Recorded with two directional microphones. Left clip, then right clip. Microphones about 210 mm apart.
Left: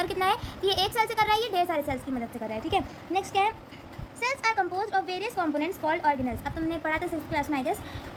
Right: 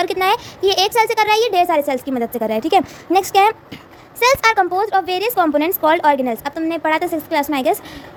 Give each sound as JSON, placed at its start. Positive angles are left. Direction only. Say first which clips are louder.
{"t": 0.0, "sound": "a woman's voice", "louder": "right 10 dB", "side_deg": -40}